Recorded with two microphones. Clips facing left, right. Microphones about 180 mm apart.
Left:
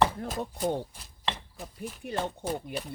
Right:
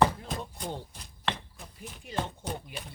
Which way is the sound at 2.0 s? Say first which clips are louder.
Left 2 dB; 60° left (ahead or behind).